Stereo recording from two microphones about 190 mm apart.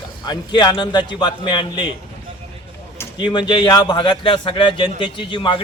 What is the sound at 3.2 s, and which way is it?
Speech, 25° left (ahead or behind).